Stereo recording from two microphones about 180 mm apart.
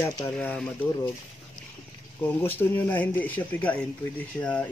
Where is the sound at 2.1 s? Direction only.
10° left (ahead or behind).